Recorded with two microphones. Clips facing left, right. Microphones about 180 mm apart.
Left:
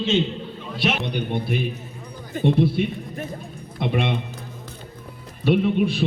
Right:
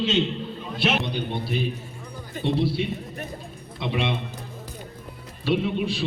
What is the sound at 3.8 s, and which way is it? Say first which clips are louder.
Speech: left 3 dB; 50° left (ahead or behind).